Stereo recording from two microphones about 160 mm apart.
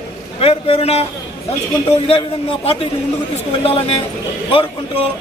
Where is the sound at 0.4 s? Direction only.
35° left (ahead or behind).